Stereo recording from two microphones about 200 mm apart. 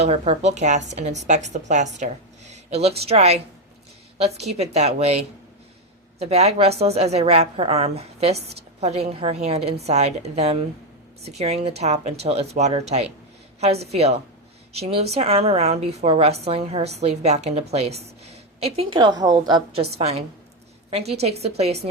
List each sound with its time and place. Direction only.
0.0 s a woman's voice: 30° right (ahead or behind)